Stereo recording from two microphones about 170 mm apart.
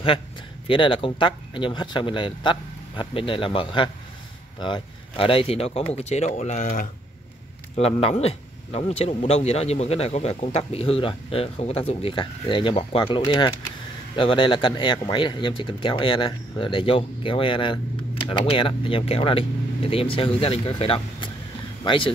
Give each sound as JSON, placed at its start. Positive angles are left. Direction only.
{"t": 0.7, "sound": "a man's voice", "side_deg": 30}